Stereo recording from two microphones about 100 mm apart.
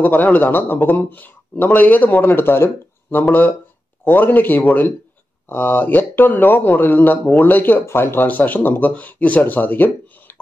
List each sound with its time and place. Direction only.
0.0 s speech: 15° left (ahead or behind)